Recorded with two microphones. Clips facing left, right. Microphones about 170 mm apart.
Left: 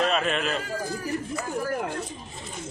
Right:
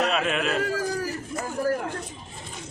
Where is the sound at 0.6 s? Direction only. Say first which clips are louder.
Right 5 dB; 70° right (ahead or behind).